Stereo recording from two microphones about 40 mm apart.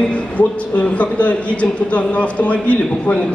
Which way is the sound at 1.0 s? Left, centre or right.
Left.